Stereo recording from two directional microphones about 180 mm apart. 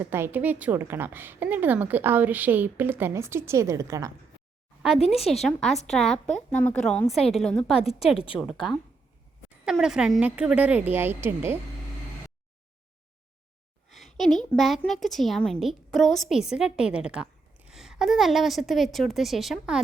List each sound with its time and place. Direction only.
0.0 s a woman's voice: 10° right (ahead or behind)
4.9 s speech: 35° left (ahead or behind)
5.4 s a woman's voice: centre (ahead or behind)
7.8 s speech: 35° left (ahead or behind)
8.4 s a woman's voice: centre (ahead or behind)
13.9 s a woman's voice: centre (ahead or behind)